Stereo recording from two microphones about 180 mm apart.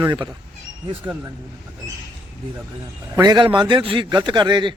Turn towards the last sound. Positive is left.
turn(degrees=-25)  # may be behind; listen again after turning